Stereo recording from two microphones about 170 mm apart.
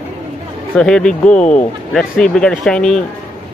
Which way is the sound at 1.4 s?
45° left (ahead or behind).